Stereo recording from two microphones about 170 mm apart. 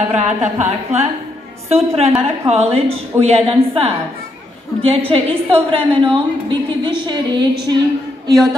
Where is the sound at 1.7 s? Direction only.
35° right (ahead or behind).